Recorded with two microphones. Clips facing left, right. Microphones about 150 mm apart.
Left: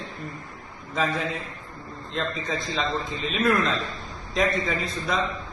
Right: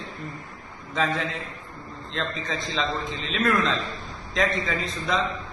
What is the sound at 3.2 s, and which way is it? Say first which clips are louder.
A man's voice: left 1 dB; 5° left (ahead or behind).